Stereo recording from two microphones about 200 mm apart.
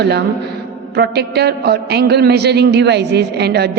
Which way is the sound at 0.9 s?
55° right (ahead or behind).